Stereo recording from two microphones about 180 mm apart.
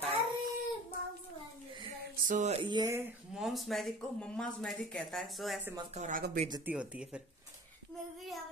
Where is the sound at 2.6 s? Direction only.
25° right (ahead or behind).